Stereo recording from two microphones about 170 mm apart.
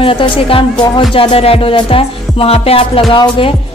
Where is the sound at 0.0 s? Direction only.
30° left (ahead or behind).